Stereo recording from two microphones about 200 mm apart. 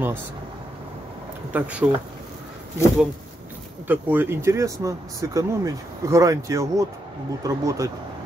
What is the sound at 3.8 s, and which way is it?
Speech, 10° right (ahead or behind).